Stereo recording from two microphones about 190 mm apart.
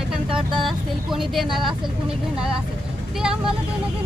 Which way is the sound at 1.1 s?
Centre (ahead or behind).